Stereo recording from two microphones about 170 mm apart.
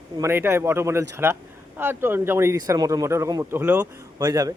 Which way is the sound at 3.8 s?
20° right (ahead or behind).